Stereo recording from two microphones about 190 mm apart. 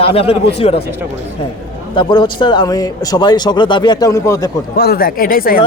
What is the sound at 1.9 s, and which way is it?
Speech, 25° left (ahead or behind).